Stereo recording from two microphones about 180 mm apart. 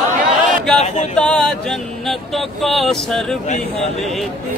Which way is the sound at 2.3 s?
Centre (ahead or behind).